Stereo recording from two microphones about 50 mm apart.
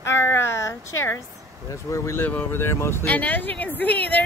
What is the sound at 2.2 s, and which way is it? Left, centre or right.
Speech, left.